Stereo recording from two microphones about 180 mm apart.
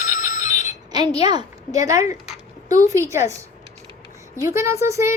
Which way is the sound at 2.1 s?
45° left (ahead or behind).